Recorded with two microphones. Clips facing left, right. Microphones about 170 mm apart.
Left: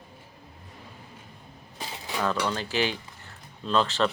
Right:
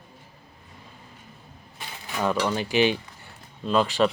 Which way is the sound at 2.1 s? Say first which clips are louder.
Right 3 dB; 15° right (ahead or behind).